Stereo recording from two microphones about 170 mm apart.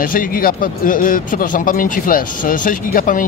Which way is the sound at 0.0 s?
55° left (ahead or behind).